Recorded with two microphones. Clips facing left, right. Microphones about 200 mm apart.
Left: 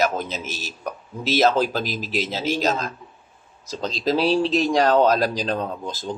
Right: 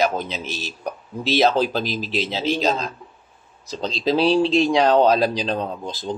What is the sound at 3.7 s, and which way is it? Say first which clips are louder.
Speech: right 1 dB; 45° left (ahead or behind).